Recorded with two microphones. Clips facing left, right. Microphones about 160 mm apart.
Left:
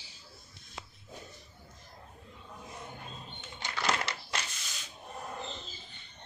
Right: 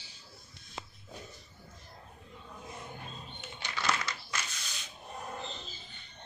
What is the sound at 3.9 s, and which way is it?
Crumpling, 30° left (ahead or behind).